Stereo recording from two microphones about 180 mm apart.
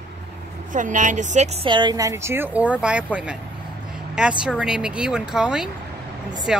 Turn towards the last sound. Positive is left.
turn(degrees=-5)  # may be behind; listen again after turning